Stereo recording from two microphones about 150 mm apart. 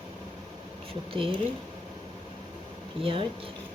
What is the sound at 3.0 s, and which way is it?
Speech, 35° right (ahead or behind).